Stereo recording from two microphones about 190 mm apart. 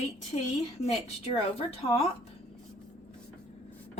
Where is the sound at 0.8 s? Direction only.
30° left (ahead or behind).